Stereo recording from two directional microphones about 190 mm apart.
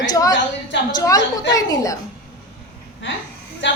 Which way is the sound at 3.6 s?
75° left (ahead or behind).